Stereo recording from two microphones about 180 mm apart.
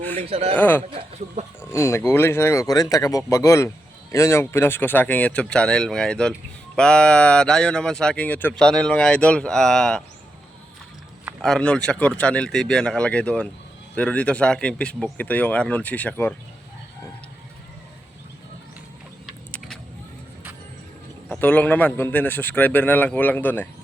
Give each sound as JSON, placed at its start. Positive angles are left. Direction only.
{"t": 0.2, "sound": "speech", "side_deg": -35}
{"t": 0.5, "sound": "a man's voice", "side_deg": 10}
{"t": 11.4, "sound": "a man's voice", "side_deg": 5}
{"t": 19.2, "sound": "a sound", "side_deg": 5}
{"t": 21.2, "sound": "a man's voice", "side_deg": 10}